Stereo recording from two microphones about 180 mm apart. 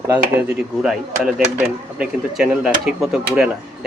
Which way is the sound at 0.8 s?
Centre (ahead or behind).